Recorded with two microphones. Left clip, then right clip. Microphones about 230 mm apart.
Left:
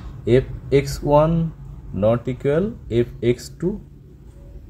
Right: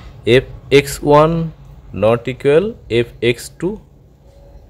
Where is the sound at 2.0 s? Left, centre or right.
Centre.